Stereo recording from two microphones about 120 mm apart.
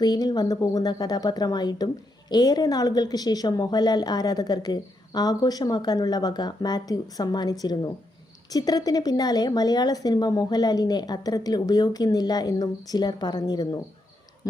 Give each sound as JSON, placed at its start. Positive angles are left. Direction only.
{"t": 0.0, "sound": "a woman's voice", "side_deg": 35}